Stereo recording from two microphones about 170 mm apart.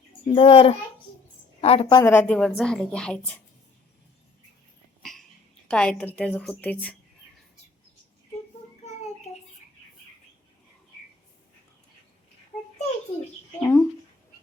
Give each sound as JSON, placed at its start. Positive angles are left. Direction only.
{"t": 0.3, "sound": "a child's voice", "side_deg": 35}
{"t": 2.0, "sound": "a woman's voice", "side_deg": 15}
{"t": 5.7, "sound": "a woman's voice", "side_deg": 5}
{"t": 13.6, "sound": "a sound", "side_deg": 15}